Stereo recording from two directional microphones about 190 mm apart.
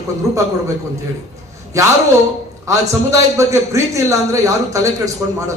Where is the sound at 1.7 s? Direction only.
15° right (ahead or behind).